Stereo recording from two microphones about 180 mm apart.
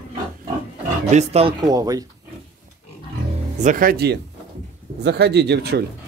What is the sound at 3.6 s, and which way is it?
Speech, 50° right (ahead or behind).